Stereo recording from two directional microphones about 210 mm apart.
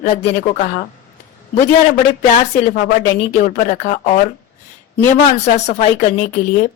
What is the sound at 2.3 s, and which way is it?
A woman's voice, 35° left (ahead or behind).